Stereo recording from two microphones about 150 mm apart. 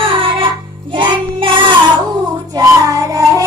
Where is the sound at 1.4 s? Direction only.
35° right (ahead or behind).